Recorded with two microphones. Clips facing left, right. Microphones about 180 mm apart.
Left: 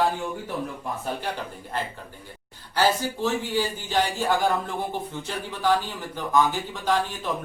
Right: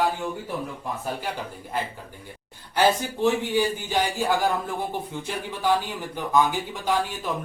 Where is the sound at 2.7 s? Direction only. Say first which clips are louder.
Right 1 dB; 15° right (ahead or behind).